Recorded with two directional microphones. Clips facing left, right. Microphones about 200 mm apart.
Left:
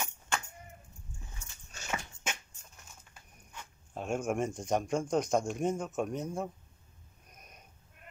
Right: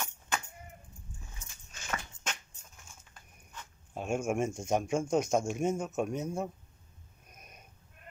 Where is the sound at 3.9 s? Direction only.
5° right (ahead or behind).